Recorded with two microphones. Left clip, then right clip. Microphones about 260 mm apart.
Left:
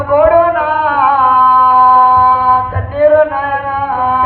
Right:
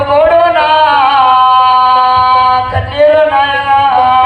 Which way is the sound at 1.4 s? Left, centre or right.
Right.